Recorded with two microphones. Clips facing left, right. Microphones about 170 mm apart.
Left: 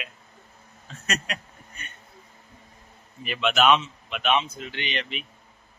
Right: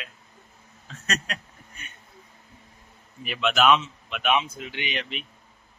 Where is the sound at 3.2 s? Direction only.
Centre (ahead or behind).